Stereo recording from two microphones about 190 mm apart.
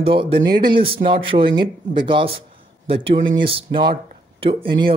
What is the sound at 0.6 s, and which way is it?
Speech, 25° right (ahead or behind).